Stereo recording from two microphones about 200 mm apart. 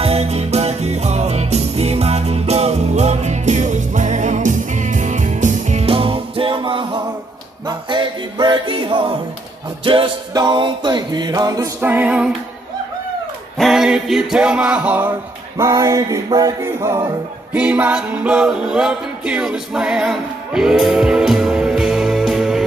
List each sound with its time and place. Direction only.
0.0 s music: 30° right (ahead or behind); by 12.4 s 5° right (ahead or behind)
13.6 s a sound: centre (ahead or behind); by 17.2 s 20° right (ahead or behind)
17.5 s music: 5° right (ahead or behind)